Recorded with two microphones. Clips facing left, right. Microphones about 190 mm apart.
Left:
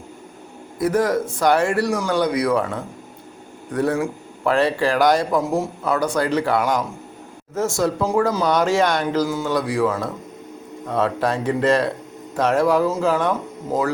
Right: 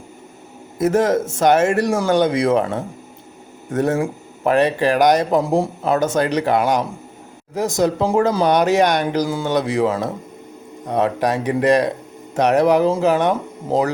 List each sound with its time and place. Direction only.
0.8 s speech: 25° right (ahead or behind)